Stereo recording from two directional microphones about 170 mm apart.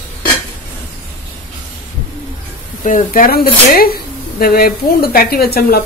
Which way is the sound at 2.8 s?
50° left (ahead or behind).